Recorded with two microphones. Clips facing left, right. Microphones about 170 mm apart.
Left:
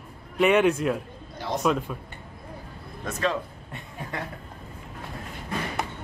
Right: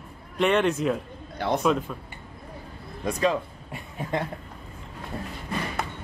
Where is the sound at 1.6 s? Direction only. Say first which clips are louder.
Left 3 dB; centre (ahead or behind).